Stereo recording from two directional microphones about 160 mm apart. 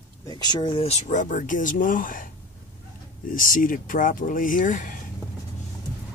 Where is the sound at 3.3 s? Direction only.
60° left (ahead or behind).